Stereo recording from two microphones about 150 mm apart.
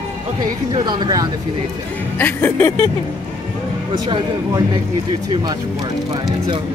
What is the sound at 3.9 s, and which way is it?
Speech, 30° right (ahead or behind).